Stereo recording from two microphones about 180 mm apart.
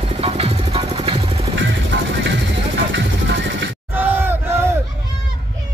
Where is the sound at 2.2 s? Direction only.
85° right.